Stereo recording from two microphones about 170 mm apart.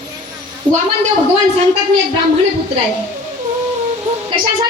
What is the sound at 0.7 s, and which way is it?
Speech, 5° right (ahead or behind).